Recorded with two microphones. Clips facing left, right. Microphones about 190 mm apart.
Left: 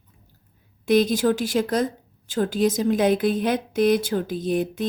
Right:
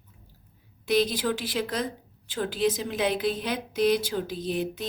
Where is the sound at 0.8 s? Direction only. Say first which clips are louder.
Left 6 dB; 45° left (ahead or behind).